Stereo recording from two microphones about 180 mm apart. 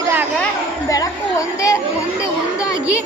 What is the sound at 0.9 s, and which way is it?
Speech, 20° left (ahead or behind).